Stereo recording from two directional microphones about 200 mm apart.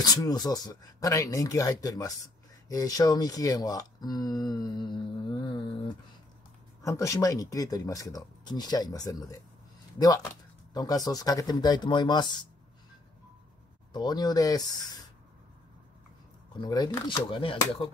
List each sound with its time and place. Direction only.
0.0 s speech: 20° left (ahead or behind)
6.8 s speech: 15° left (ahead or behind)
13.9 s speech: 20° left (ahead or behind)
16.6 s speech: 20° left (ahead or behind)